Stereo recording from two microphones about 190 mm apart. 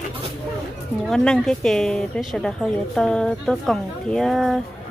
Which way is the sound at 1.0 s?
5° left (ahead or behind).